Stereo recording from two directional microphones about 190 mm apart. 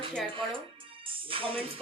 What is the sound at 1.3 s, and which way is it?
Speech, 30° right (ahead or behind).